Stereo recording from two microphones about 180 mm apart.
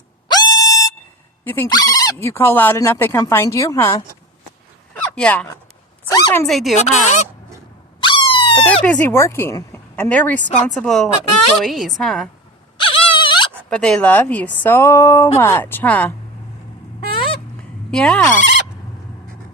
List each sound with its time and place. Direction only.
0.3 s music: 25° left (ahead or behind)
1.5 s speech: 10° left (ahead or behind)
5.1 s a woman's voice: 5° left (ahead or behind)
6.1 s speech: 20° left (ahead or behind)
6.4 s a woman's voice: centre (ahead or behind)
6.7 s speech: 40° left (ahead or behind)
8.0 s a sound: 25° left (ahead or behind)
8.8 s a woman's voice: 10° left (ahead or behind)
12.7 s a sound: 30° left (ahead or behind)
13.7 s speech: 5° left (ahead or behind)
17.9 s a woman's voice: 5° left (ahead or behind)